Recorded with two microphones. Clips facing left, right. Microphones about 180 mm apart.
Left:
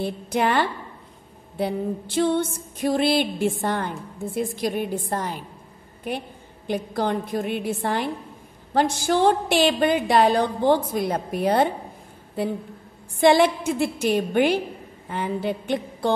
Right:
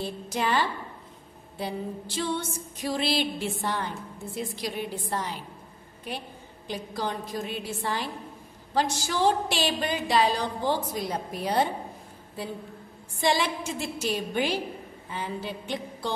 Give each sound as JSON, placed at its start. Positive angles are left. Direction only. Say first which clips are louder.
{"t": 0.0, "sound": "a woman's voice", "louder": "left 6 dB", "side_deg": 60}
{"t": 6.7, "sound": "a woman's voice", "louder": "left 8 dB", "side_deg": 55}
{"t": 13.2, "sound": "a woman's voice", "louder": "left 9 dB", "side_deg": 55}